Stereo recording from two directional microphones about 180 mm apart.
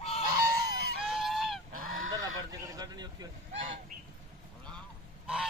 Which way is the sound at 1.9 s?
90° right.